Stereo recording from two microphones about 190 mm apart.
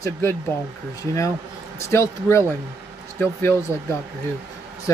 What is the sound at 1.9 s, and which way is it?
Speech, 15° left (ahead or behind).